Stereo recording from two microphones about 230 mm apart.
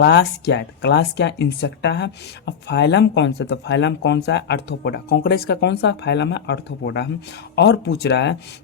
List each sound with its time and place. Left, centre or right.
0.0 s speech: left